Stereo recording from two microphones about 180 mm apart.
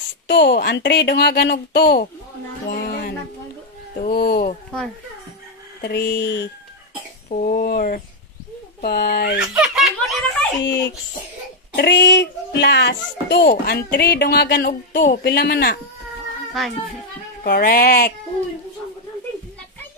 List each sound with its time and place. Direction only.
0.3 s speech: 70° left (ahead or behind)
2.7 s a sound: 60° left (ahead or behind)
3.9 s speech: 55° left (ahead or behind)
5.8 s speech: 65° left (ahead or behind)
7.2 s speech: 50° left (ahead or behind)
9.4 s speech: 5° right (ahead or behind)
10.6 s speech: 80° left; by 14.7 s 60° left (ahead or behind)
14.7 s speech: 45° left (ahead or behind)
15.2 s speech: 65° left (ahead or behind)
17.5 s speech: 60° left (ahead or behind)